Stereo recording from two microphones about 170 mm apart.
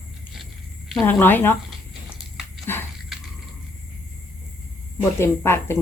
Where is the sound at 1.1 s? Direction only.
10° left (ahead or behind).